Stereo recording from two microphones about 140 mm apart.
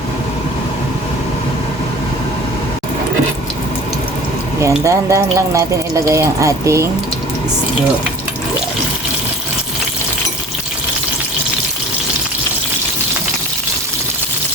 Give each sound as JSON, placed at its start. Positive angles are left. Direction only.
{"t": 4.6, "sound": "speech", "side_deg": -20}